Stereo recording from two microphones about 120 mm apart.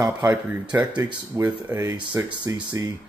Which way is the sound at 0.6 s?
35° right (ahead or behind).